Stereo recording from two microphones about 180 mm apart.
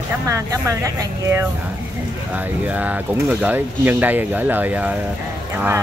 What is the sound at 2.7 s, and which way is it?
Speech, 10° right (ahead or behind).